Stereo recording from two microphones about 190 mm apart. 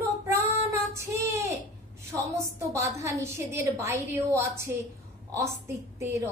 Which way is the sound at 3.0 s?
15° right (ahead or behind).